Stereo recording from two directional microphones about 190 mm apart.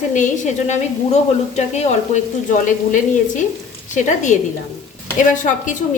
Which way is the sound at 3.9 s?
40° left (ahead or behind).